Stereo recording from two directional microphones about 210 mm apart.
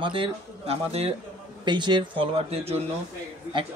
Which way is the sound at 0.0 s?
25° right (ahead or behind).